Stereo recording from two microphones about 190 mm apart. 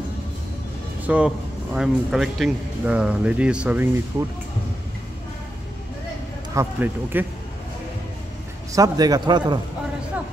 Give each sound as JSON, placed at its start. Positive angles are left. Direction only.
{"t": 1.0, "sound": "a man's voice", "side_deg": -5}
{"t": 6.5, "sound": "speech", "side_deg": -15}
{"t": 8.7, "sound": "a man's voice", "side_deg": -20}